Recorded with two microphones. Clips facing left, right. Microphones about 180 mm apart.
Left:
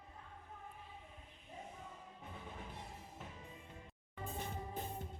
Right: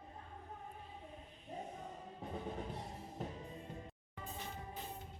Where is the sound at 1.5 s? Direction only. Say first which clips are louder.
Right 5 dB; 40° right (ahead or behind).